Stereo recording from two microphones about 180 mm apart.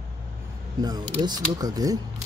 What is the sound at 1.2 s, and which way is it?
Speech, 20° right (ahead or behind).